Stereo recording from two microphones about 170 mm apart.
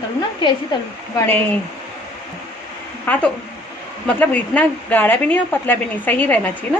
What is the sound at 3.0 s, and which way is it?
A woman's voice, 10° left (ahead or behind).